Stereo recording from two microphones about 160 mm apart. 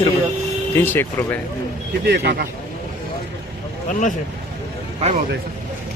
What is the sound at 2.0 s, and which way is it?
Speech, 90° right.